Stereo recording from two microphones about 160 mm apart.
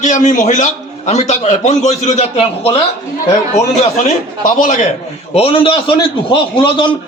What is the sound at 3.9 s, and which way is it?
Speech, 50° left (ahead or behind).